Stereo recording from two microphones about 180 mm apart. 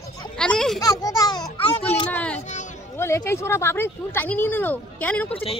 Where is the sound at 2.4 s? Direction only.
40° left (ahead or behind).